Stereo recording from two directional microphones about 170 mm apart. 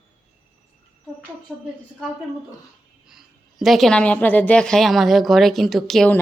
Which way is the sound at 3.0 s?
Centre (ahead or behind).